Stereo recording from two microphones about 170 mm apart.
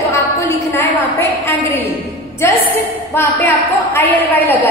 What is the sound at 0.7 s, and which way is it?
A woman's voice, 15° left (ahead or behind).